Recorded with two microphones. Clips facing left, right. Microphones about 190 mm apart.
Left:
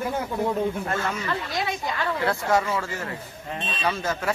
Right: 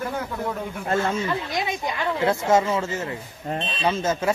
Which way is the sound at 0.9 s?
25° right (ahead or behind).